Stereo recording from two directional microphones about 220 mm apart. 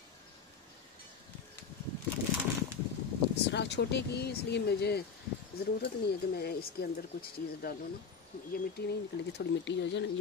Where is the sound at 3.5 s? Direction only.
50° left (ahead or behind).